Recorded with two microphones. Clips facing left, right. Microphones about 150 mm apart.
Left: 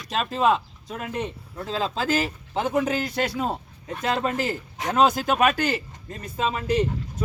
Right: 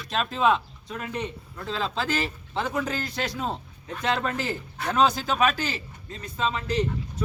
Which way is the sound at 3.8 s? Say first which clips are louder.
Left 2 dB; 40° left (ahead or behind).